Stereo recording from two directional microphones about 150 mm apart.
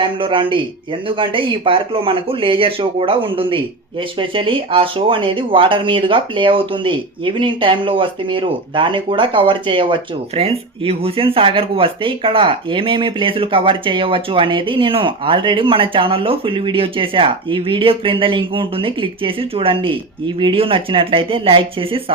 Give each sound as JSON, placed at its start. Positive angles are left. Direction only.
{"t": 0.0, "sound": "speech", "side_deg": -35}